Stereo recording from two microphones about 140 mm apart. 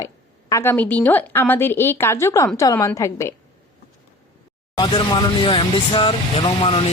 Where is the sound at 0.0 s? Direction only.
20° left (ahead or behind).